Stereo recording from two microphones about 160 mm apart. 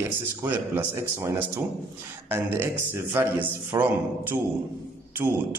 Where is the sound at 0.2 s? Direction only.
15° right (ahead or behind).